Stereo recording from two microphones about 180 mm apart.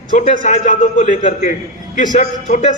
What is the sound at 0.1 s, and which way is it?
A man's voice, 45° left (ahead or behind).